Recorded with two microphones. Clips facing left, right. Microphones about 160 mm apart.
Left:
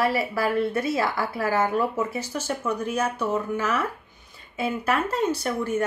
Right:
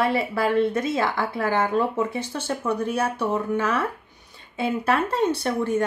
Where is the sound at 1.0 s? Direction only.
30° left (ahead or behind).